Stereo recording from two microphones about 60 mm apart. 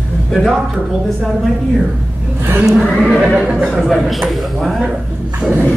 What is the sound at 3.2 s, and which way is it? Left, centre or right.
Speech, centre.